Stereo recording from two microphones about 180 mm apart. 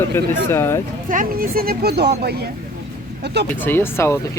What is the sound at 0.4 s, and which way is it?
Speech, 15° left (ahead or behind).